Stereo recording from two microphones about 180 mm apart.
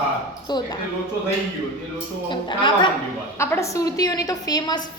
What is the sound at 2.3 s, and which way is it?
A woman's voice, 25° left (ahead or behind).